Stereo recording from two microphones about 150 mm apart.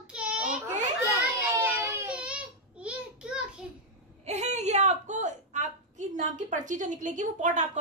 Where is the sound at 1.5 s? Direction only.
20° right (ahead or behind).